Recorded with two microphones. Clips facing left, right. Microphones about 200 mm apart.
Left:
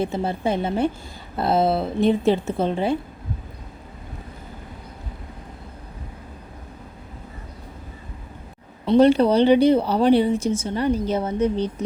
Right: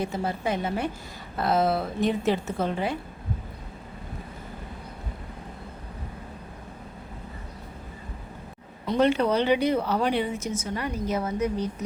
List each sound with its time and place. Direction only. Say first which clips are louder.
0.0 s a woman's voice: left 5 dB; 25° left (ahead or behind)
8.9 s speech: left 7 dB; 35° left (ahead or behind)